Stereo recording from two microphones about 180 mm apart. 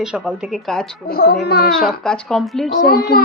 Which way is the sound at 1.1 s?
60° left (ahead or behind).